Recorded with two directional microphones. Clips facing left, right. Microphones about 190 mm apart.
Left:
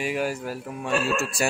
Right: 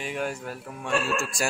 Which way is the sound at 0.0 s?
5° left (ahead or behind).